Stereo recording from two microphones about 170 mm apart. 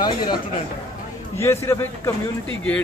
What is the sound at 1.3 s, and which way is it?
Speech, 15° left (ahead or behind).